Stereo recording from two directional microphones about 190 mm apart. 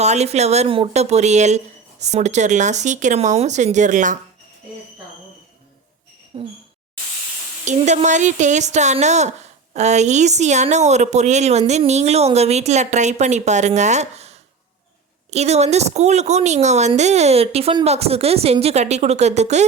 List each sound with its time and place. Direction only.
0.0 s speech: 35° right (ahead or behind)
6.3 s speech: 30° right (ahead or behind)
7.6 s speech: 40° right (ahead or behind)